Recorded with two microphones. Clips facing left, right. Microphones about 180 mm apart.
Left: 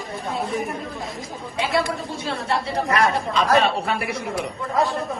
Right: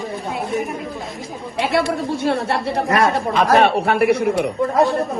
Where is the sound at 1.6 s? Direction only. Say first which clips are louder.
Right 4 dB; 60° right (ahead or behind).